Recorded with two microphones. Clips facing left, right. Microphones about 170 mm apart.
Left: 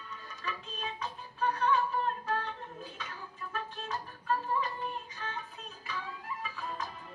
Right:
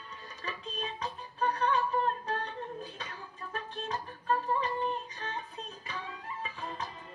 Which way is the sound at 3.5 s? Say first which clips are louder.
Right 2 dB; 35° right (ahead or behind).